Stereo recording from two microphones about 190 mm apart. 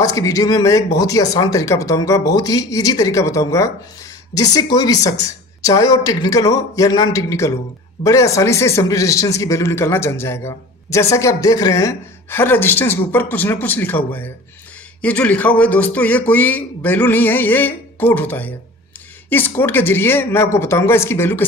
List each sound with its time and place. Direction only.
0.0 s speech: 20° left (ahead or behind)